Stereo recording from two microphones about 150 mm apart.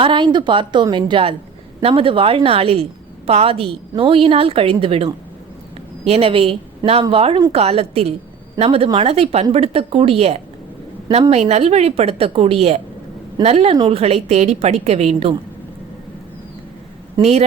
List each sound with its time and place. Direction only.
0.0 s a woman's voice: 35° right (ahead or behind)
17.2 s a woman's voice: 45° right (ahead or behind)